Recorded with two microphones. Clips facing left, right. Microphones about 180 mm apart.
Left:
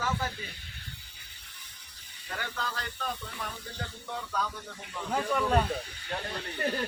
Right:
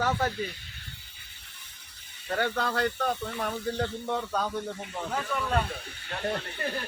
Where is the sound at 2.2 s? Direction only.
55° right (ahead or behind).